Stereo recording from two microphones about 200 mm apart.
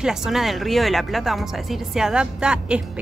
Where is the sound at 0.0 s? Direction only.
Centre (ahead or behind).